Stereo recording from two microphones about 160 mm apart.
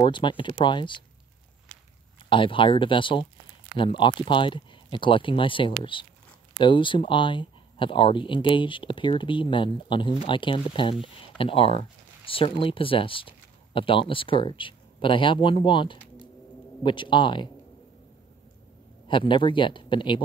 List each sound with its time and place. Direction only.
0.0 s speech: 30° left (ahead or behind)
2.2 s speech: 30° left (ahead or behind)
19.0 s speech: 30° left (ahead or behind)